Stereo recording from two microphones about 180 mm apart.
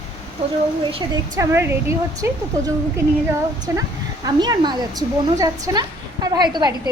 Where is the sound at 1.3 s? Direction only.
15° right (ahead or behind).